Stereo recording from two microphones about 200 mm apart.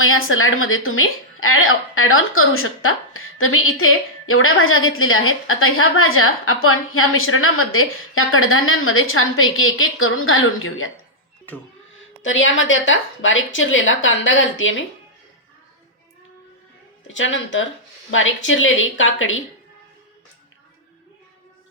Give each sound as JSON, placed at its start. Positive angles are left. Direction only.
{"t": 0.0, "sound": "a woman's voice", "side_deg": 90}
{"t": 12.2, "sound": "speech", "side_deg": 75}
{"t": 17.1, "sound": "a woman's voice", "side_deg": 70}